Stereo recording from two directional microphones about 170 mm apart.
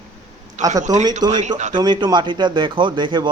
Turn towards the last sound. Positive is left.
turn(degrees=-25)  # may be behind; listen again after turning